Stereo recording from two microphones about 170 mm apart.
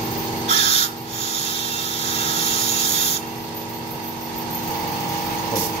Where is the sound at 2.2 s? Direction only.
35° left (ahead or behind).